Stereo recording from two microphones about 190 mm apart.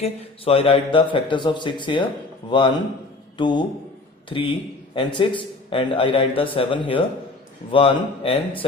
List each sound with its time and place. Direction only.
0.0 s a man's voice: 30° left (ahead or behind)